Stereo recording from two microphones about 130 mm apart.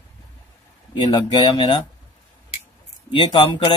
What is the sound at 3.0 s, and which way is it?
Speech, 40° left (ahead or behind).